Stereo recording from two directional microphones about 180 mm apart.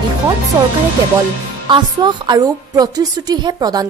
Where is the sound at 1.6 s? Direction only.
25° right (ahead or behind).